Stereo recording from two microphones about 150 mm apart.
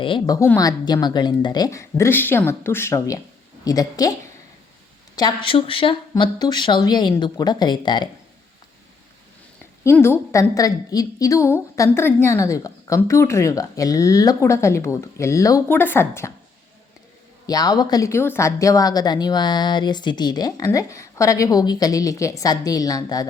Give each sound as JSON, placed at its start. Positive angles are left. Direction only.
{"t": 0.0, "sound": "a woman's voice", "side_deg": 35}
{"t": 0.3, "sound": "a woman's voice", "side_deg": 20}
{"t": 5.1, "sound": "a woman's voice", "side_deg": 30}
{"t": 9.8, "sound": "a woman's voice", "side_deg": 15}
{"t": 17.4, "sound": "a woman's voice", "side_deg": 25}